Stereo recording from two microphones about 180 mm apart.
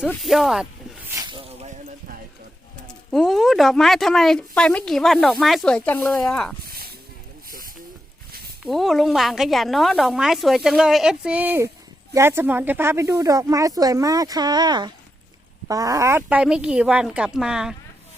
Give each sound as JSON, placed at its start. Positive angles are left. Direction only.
{"t": 0.0, "sound": "speech", "side_deg": 0}
{"t": 1.1, "sound": "snake", "side_deg": -25}
{"t": 2.8, "sound": "speech", "side_deg": 0}
{"t": 6.7, "sound": "a sound", "side_deg": -55}
{"t": 8.6, "sound": "speech", "side_deg": 0}